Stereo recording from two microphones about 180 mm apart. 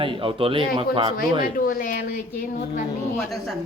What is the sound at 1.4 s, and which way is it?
A woman's voice, 50° left (ahead or behind).